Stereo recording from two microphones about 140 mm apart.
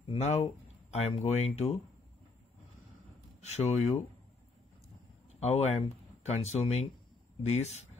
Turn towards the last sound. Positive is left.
turn(degrees=50)  # may be behind; listen again after turning